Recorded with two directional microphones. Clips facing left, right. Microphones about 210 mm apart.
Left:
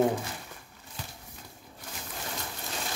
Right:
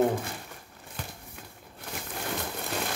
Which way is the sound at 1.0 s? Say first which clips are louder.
Right 3 dB; 55° right (ahead or behind).